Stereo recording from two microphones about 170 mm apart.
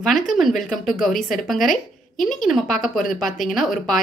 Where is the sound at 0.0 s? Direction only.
Centre (ahead or behind).